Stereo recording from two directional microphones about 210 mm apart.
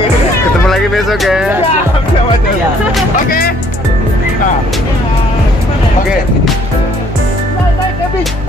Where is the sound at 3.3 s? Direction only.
45° left (ahead or behind).